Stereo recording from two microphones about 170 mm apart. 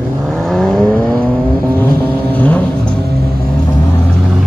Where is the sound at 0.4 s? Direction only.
Centre (ahead or behind).